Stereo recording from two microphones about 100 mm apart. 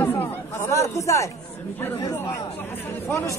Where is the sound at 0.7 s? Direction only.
30° left (ahead or behind).